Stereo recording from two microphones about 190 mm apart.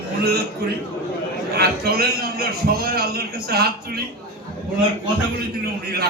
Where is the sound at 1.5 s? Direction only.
55° right (ahead or behind).